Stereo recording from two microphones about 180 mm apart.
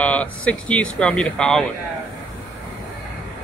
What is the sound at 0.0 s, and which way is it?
Speech, 5° left (ahead or behind).